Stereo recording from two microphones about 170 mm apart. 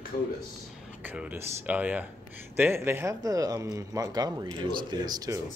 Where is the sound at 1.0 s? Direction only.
10° right (ahead or behind).